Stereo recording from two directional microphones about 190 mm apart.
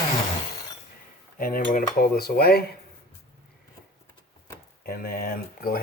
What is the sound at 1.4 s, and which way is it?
Cutlery, 50° left (ahead or behind).